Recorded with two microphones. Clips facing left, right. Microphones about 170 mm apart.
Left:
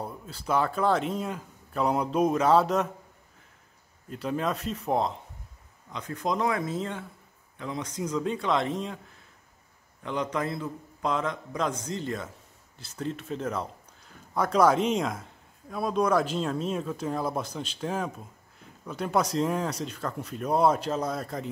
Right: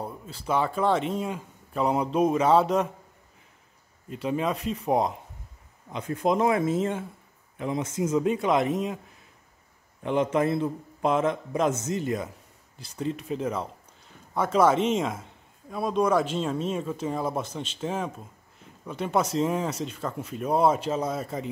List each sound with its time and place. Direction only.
0.3 s a man's voice: centre (ahead or behind)
4.1 s a man's voice: 5° right (ahead or behind)
5.9 s a man's voice: 25° right (ahead or behind)
10.0 s a man's voice: 25° right (ahead or behind)
12.9 s a man's voice: 5° right (ahead or behind)